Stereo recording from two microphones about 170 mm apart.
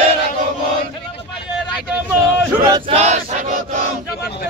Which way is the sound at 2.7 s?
35° right (ahead or behind).